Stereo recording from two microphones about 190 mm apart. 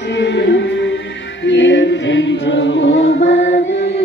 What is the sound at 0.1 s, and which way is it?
Music, 65° left (ahead or behind).